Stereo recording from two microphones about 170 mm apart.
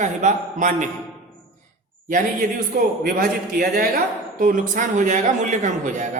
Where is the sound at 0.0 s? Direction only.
45° right (ahead or behind).